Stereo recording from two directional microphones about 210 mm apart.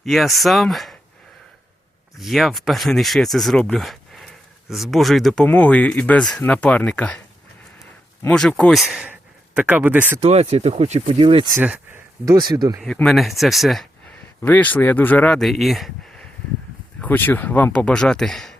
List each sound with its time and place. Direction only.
0.0 s speech: centre (ahead or behind)
2.1 s speech: centre (ahead or behind)
7.8 s a sound: 15° left (ahead or behind)
8.4 s a man's voice: 5° left (ahead or behind)
10.2 s speech: 30° right (ahead or behind)
11.5 s a man's voice: 5° right (ahead or behind)
12.3 s a man's voice: 20° right (ahead or behind)
12.8 s speech: 5° left (ahead or behind)